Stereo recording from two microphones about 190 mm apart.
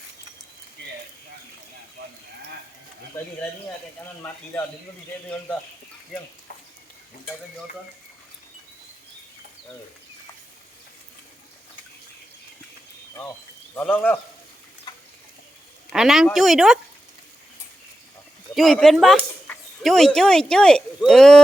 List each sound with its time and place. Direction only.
6.1 s speech: centre (ahead or behind)
13.7 s a man's voice: 10° left (ahead or behind)
14.9 s a sound: 20° left (ahead or behind)
15.9 s speech: centre (ahead or behind)
18.5 s speech: centre (ahead or behind)